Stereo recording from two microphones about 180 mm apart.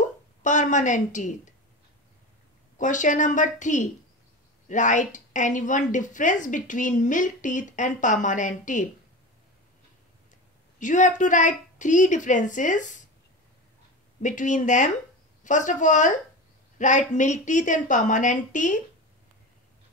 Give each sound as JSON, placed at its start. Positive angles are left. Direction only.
{"t": 0.0, "sound": "a woman's voice", "side_deg": 45}
{"t": 2.8, "sound": "a woman's voice", "side_deg": 45}
{"t": 10.8, "sound": "a woman's voice", "side_deg": 45}
{"t": 14.2, "sound": "a woman's voice", "side_deg": 45}